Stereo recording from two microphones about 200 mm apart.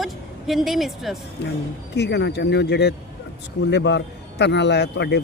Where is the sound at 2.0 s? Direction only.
60° left (ahead or behind).